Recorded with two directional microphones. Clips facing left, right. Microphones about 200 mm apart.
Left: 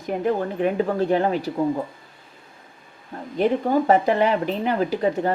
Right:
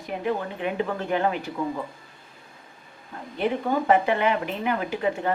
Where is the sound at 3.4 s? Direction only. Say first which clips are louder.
Left 5 dB; 40° left (ahead or behind).